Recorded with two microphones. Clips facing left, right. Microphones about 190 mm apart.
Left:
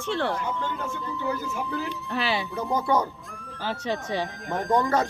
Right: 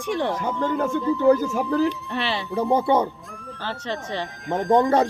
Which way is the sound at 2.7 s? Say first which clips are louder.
Right 4 dB; 30° right (ahead or behind).